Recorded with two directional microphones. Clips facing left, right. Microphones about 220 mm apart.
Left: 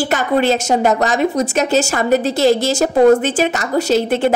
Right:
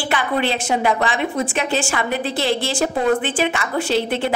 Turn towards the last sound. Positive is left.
turn(degrees=45)  # may be behind; listen again after turning